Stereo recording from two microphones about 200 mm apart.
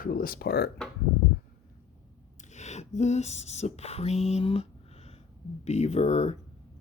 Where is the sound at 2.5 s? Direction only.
35° left (ahead or behind).